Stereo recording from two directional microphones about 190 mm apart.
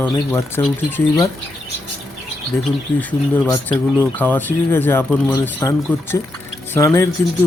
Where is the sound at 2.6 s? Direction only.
10° left (ahead or behind).